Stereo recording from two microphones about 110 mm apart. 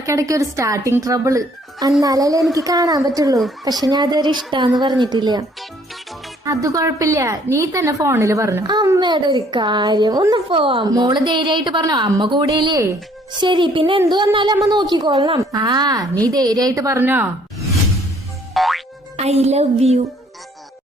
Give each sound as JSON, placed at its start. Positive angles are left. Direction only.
{"t": 0.0, "sound": "a woman's voice", "side_deg": -30}
{"t": 8.6, "sound": "a woman's voice", "side_deg": -40}
{"t": 10.3, "sound": "a woman's voice", "side_deg": -50}
{"t": 10.8, "sound": "a woman's voice", "side_deg": -35}
{"t": 17.0, "sound": "speech", "side_deg": -20}
{"t": 18.5, "sound": "music", "side_deg": 0}
{"t": 19.1, "sound": "speech", "side_deg": -75}